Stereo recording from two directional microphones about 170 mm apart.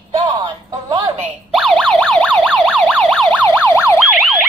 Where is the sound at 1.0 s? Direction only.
35° right (ahead or behind).